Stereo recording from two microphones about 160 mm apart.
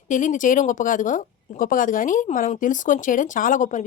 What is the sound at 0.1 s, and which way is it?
Speech, 50° left (ahead or behind).